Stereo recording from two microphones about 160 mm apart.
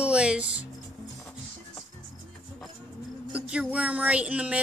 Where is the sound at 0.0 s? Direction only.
5° right (ahead or behind).